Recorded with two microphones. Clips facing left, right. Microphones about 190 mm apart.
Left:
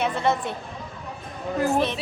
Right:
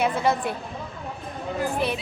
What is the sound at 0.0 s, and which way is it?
Speech, 5° right (ahead or behind).